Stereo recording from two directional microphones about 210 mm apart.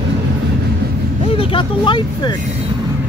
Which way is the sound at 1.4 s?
25° left (ahead or behind).